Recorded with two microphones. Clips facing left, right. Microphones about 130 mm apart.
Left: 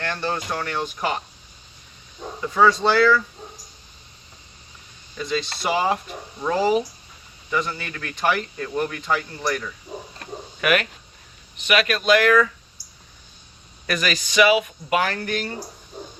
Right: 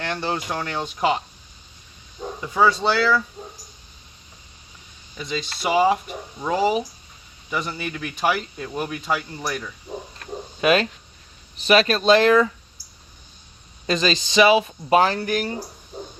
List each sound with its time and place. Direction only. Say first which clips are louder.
0.0 s speech: even; 20° right (ahead or behind)
2.6 s speech: left 2 dB; 10° right (ahead or behind)
5.6 s speech: right 5 dB; 10° right (ahead or behind)
10.6 s speech: right 3 dB; 25° right (ahead or behind)
13.8 s speech: right 3 dB; 25° right (ahead or behind)